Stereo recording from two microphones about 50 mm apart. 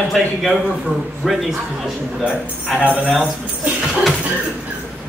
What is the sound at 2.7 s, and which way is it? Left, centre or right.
Speech, right.